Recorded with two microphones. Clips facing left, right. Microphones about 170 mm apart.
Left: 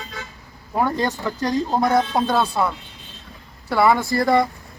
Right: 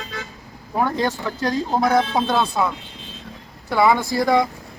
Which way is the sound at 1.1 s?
15° left (ahead or behind).